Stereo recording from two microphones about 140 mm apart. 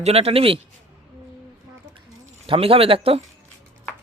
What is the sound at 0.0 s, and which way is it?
Speech, 45° right (ahead or behind).